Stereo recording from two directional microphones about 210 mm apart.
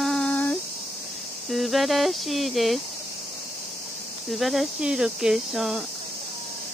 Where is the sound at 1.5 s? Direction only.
Centre (ahead or behind).